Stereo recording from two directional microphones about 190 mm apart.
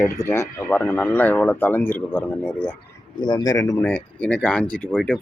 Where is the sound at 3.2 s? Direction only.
25° left (ahead or behind).